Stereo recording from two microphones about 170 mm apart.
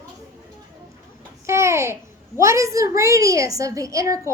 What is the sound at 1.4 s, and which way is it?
A woman's voice, 15° right (ahead or behind).